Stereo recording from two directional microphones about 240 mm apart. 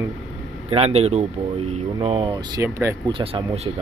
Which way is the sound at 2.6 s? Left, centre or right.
Centre.